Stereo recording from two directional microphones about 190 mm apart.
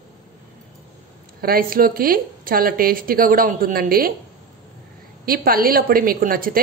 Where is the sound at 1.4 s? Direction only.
50° right (ahead or behind).